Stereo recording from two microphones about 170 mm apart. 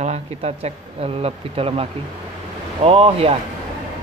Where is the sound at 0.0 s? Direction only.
40° right (ahead or behind).